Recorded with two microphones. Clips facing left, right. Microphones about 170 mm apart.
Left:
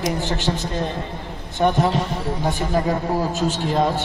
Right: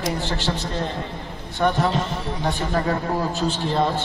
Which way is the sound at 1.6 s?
15° left (ahead or behind).